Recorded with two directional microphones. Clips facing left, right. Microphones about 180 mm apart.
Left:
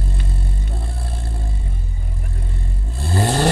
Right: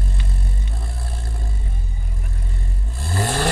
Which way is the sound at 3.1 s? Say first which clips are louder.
Left 4 dB; 30° left (ahead or behind).